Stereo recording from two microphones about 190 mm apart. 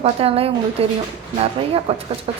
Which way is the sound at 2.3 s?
30° right (ahead or behind).